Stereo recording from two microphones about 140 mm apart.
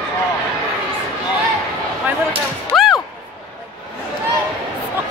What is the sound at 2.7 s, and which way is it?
Music, centre (ahead or behind).